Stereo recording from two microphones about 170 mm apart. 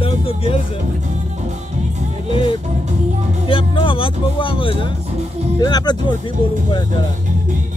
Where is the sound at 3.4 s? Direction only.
30° left (ahead or behind).